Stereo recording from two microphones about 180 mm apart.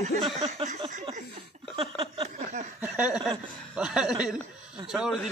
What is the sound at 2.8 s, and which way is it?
Speech, 5° right (ahead or behind).